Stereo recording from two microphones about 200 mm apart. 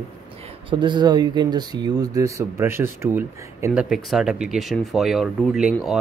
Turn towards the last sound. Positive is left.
turn(degrees=-5)  # may be behind; listen again after turning